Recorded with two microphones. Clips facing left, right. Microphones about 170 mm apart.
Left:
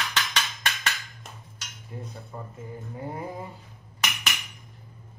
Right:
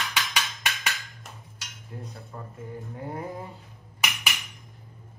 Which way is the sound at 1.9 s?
5° left (ahead or behind).